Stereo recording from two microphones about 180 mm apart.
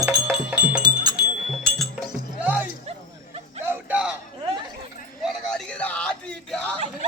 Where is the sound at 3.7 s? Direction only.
5° right (ahead or behind).